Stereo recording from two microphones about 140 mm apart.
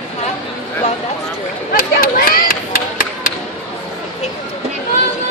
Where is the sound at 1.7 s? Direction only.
90° left.